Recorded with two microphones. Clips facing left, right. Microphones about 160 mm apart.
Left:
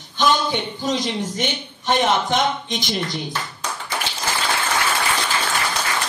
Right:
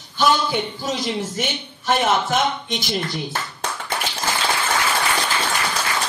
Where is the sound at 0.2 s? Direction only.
10° right (ahead or behind).